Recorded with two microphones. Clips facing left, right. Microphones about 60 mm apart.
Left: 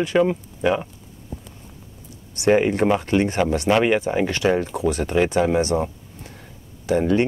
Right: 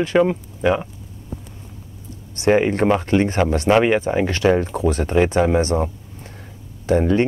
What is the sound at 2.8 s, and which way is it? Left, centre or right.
Speech, centre.